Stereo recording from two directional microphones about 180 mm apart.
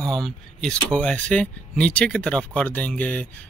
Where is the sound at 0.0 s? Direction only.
5° left (ahead or behind).